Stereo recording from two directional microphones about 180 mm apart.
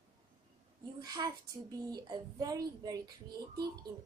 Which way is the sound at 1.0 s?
20° right (ahead or behind).